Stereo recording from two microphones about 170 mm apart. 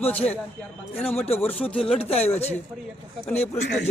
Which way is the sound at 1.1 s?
40° left (ahead or behind).